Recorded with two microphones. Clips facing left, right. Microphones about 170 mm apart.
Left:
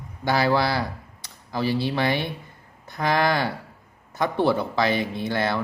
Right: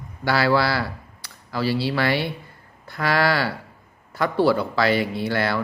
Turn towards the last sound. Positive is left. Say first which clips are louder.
# right 1 dB
turn(degrees=20)  # may be behind; listen again after turning